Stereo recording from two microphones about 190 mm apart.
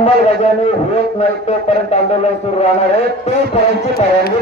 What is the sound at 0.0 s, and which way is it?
A man's voice, 35° left (ahead or behind).